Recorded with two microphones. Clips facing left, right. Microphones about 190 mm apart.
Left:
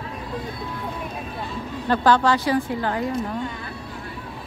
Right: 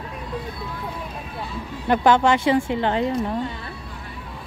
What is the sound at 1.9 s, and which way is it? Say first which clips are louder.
A woman's voice: right 2 dB; 20° right (ahead or behind).